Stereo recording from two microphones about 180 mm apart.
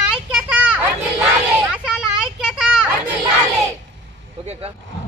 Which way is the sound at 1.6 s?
5° right (ahead or behind).